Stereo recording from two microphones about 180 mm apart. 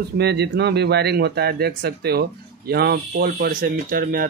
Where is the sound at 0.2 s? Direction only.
65° right (ahead or behind).